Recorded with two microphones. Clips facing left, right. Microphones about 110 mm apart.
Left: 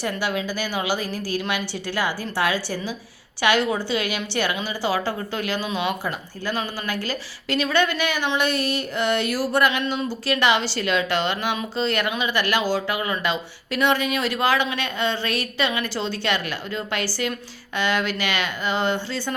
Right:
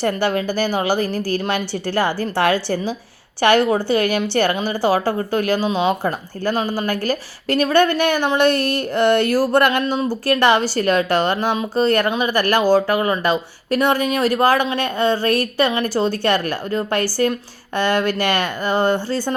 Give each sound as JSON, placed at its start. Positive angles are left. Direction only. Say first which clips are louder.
{"t": 0.0, "sound": "a woman's voice", "louder": "right 6 dB", "side_deg": -55}
{"t": 6.0, "sound": "a woman's voice", "louder": "right 7 dB", "side_deg": -50}
{"t": 9.8, "sound": "a woman's voice", "louder": "right 5 dB", "side_deg": -45}